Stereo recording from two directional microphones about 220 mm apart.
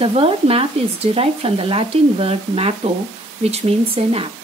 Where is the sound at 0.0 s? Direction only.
25° right (ahead or behind).